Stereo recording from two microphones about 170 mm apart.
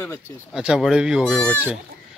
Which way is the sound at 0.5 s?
5° right (ahead or behind).